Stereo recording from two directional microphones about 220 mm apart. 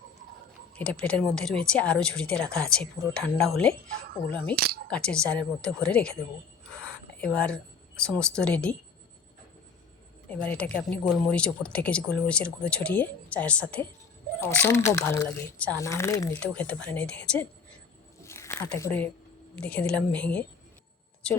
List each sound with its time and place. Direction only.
0.7 s speech: 5° left (ahead or behind)
4.5 s speech: 45° right (ahead or behind)
4.9 s speech: 5° left (ahead or behind)
10.2 s speech: 5° left (ahead or behind)
12.0 s speech: 45° left (ahead or behind)
12.3 s speech: 5° left (ahead or behind)
18.2 s a sound: 10° left (ahead or behind)
19.5 s speech: 5° left (ahead or behind)